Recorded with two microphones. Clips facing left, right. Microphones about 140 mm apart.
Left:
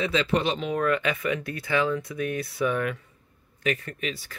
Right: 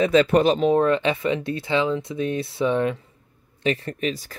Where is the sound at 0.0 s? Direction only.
45° right (ahead or behind).